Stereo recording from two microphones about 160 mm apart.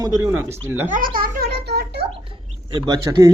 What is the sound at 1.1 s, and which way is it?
Speech, 65° right (ahead or behind).